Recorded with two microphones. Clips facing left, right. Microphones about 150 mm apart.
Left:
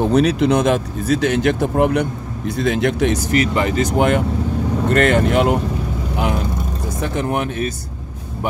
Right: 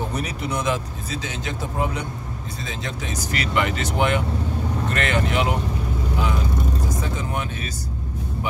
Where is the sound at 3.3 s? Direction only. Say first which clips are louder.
Left 4 dB; 40° left (ahead or behind); by 7.7 s 55° left (ahead or behind).